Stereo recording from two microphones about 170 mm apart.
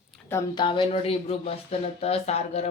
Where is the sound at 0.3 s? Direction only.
20° left (ahead or behind).